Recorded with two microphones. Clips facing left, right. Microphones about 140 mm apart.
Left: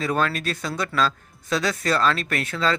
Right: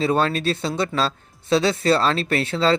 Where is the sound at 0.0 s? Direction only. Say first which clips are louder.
Right 4 dB; 25° right (ahead or behind).